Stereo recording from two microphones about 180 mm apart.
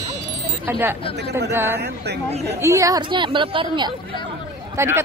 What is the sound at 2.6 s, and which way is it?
A woman's voice, 15° right (ahead or behind).